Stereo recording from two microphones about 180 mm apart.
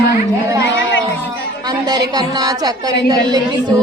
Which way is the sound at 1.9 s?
20° right (ahead or behind).